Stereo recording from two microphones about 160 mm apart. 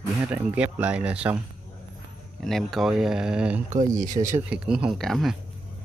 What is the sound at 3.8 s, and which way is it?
Speech, 50° right (ahead or behind).